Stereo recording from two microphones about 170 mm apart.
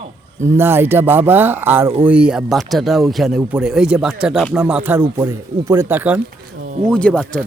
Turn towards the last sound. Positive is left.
turn(degrees=5)  # may be behind; listen again after turning